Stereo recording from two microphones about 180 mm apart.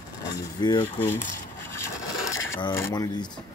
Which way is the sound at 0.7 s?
10° left (ahead or behind).